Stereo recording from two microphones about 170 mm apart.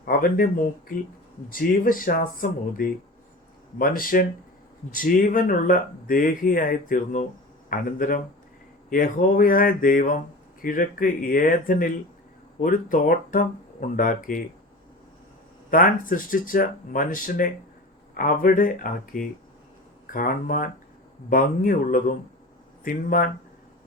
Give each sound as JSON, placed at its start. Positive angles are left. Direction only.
{"t": 0.0, "sound": "speech", "side_deg": 60}
{"t": 1.5, "sound": "speech", "side_deg": 55}
{"t": 15.7, "sound": "speech", "side_deg": 55}